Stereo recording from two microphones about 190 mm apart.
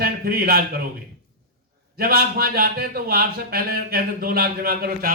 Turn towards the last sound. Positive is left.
turn(degrees=-55)  # may be behind; listen again after turning